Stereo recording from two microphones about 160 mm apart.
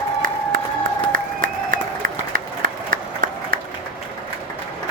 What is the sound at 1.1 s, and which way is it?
Applause, 60° right (ahead or behind).